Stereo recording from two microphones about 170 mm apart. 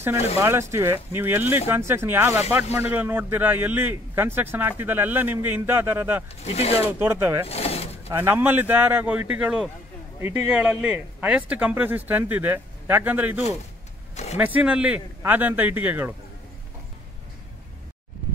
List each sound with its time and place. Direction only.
0.4 s a man's voice: 15° right (ahead or behind)
6.4 s speech: 40° left (ahead or behind)
6.8 s a man's voice: 15° right (ahead or behind)
7.4 s vehicle: 35° left (ahead or behind)
8.1 s a man's voice: 15° right (ahead or behind)